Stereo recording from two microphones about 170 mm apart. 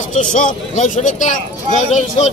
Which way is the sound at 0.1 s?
50° left (ahead or behind).